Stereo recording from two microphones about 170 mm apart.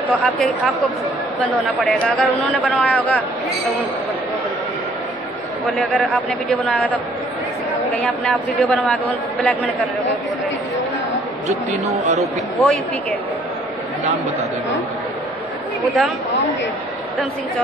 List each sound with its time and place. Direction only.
0.1 s a man's voice: 5° left (ahead or behind)
6.5 s a man's voice: 5° left (ahead or behind)
8.2 s a man's voice: 5° left (ahead or behind)
11.4 s speech: 45° right (ahead or behind)
12.2 s speech: centre (ahead or behind)
15.8 s speech: centre (ahead or behind)